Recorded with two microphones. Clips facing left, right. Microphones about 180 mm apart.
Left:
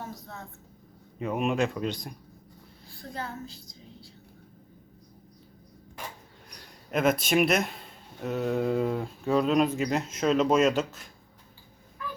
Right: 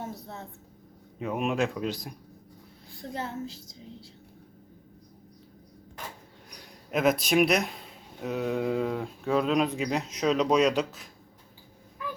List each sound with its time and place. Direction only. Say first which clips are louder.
0.0 s a sound: right 2 dB; 25° right (ahead or behind)
1.2 s speech: left 1 dB; centre (ahead or behind)
3.2 s a woman's voice: right 2 dB; 25° right (ahead or behind)
6.5 s speech: even; centre (ahead or behind)